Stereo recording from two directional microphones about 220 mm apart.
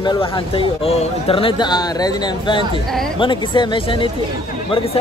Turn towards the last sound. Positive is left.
turn(degrees=25)  # may be behind; listen again after turning